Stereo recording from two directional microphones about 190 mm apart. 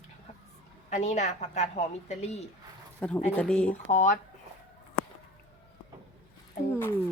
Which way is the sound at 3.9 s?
40° left (ahead or behind).